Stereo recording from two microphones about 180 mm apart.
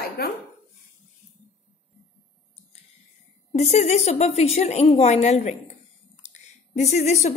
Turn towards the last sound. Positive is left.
turn(degrees=35)  # may be behind; listen again after turning